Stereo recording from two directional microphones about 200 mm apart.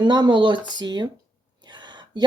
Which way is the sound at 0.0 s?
20° right (ahead or behind).